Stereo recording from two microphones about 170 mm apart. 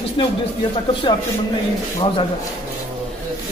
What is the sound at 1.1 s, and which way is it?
Speech, 30° left (ahead or behind).